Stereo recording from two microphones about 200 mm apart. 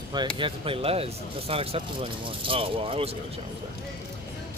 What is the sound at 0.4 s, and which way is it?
Speech, 25° right (ahead or behind).